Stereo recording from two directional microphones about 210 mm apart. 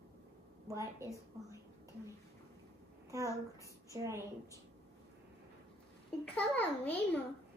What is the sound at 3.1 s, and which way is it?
A child's voice, 15° right (ahead or behind).